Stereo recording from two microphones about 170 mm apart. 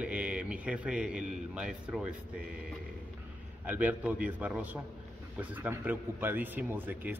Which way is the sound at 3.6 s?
10° right (ahead or behind).